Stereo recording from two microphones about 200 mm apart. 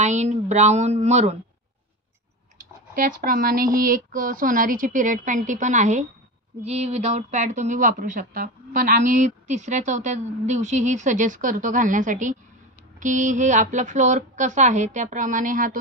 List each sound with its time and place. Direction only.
0.0 s a woman's voice: 35° right (ahead or behind)
2.9 s a woman's voice: 45° right (ahead or behind)